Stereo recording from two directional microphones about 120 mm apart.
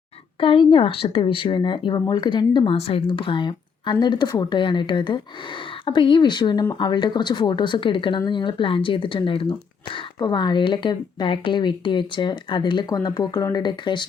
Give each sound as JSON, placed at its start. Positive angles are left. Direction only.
{"t": 0.3, "sound": "speech", "side_deg": 45}
{"t": 2.6, "sound": "speech", "side_deg": 55}